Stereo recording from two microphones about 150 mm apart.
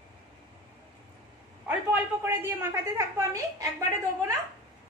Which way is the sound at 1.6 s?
15° right (ahead or behind).